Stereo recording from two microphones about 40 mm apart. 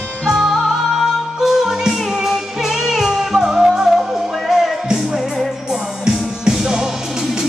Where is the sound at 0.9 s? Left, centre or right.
Centre.